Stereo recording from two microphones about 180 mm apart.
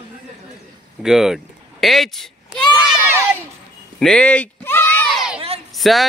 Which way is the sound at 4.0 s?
5° left (ahead or behind).